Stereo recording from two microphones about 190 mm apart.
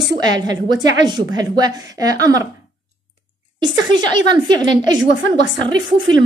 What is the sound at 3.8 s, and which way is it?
A woman's voice, 25° right (ahead or behind).